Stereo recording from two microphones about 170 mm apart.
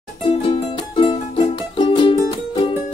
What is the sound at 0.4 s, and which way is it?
Music, 30° left (ahead or behind).